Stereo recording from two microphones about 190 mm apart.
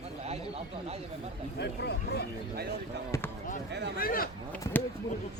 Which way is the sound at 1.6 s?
60° left (ahead or behind).